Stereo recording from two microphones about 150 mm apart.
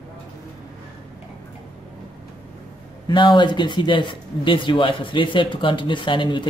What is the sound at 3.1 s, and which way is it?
Speech, 30° left (ahead or behind).